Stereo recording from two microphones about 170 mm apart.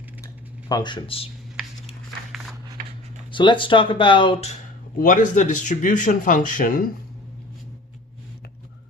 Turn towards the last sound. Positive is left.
turn(degrees=55)  # may be behind; listen again after turning